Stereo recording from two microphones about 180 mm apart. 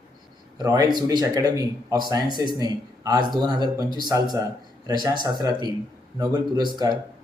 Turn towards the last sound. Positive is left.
turn(degrees=-25)  # may be behind; listen again after turning